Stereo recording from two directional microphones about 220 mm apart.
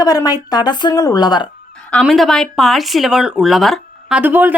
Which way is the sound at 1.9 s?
Centre (ahead or behind).